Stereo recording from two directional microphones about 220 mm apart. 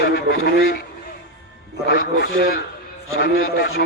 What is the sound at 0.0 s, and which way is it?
Speech, 45° left (ahead or behind).